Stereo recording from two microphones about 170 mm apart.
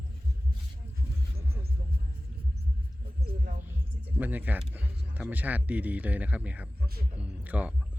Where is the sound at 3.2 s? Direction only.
60° right (ahead or behind).